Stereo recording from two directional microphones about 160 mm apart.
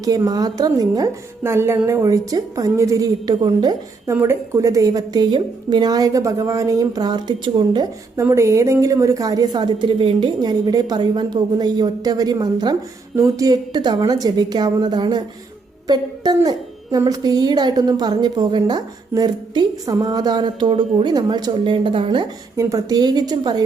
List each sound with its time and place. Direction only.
0.0 s a woman's voice: 20° right (ahead or behind)
8.2 s a woman's voice: 15° right (ahead or behind)